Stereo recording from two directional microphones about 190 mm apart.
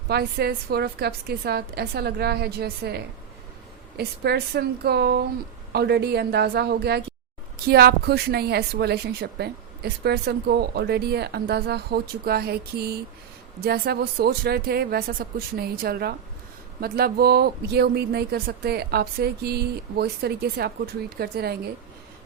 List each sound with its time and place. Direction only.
0.1 s a woman's voice: 55° right (ahead or behind)